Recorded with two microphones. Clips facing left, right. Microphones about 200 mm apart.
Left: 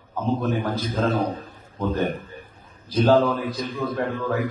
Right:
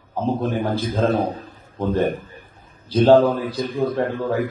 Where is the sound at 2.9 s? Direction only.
25° right (ahead or behind).